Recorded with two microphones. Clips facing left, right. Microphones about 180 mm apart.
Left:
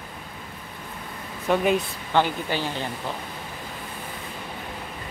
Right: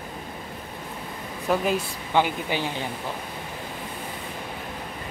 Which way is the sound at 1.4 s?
Centre (ahead or behind).